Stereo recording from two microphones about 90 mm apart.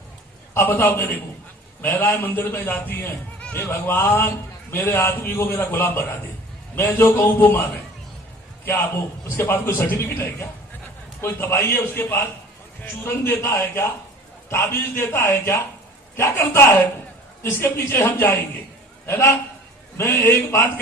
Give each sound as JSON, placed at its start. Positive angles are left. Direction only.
{"t": 0.5, "sound": "a man's voice", "side_deg": 25}
{"t": 8.6, "sound": "a man's voice", "side_deg": 25}